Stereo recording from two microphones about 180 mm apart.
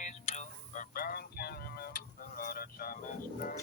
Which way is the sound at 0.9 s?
55° left (ahead or behind).